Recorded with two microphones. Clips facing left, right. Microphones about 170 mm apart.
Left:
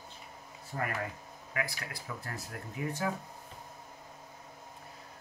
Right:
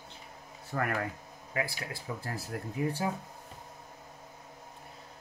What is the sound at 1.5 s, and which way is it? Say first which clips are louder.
Speech: right 3 dB; 25° right (ahead or behind).